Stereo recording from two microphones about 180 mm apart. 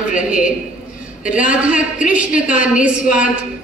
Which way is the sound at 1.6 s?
5° right (ahead or behind).